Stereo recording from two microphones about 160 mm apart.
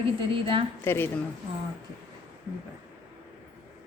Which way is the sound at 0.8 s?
15° left (ahead or behind).